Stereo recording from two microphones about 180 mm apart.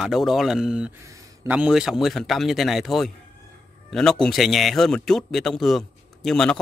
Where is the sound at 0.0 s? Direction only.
Centre (ahead or behind).